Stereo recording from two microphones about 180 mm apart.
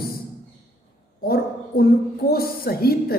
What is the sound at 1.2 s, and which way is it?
A woman's voice, 55° left (ahead or behind).